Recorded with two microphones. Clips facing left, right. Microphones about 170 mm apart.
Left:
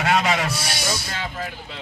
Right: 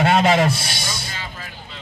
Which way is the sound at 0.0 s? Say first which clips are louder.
Right 5 dB; 30° right (ahead or behind).